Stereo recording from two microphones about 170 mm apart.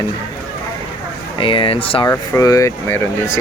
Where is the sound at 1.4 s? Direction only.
30° left (ahead or behind).